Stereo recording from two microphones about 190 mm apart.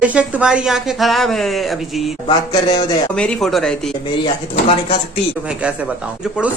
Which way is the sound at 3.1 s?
5° left (ahead or behind).